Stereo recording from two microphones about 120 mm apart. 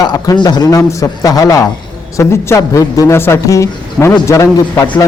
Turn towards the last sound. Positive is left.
turn(degrees=25)  # may be behind; listen again after turning